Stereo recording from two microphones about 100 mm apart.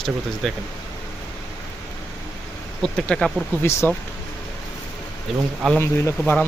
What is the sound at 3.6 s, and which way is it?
Speech, 25° left (ahead or behind).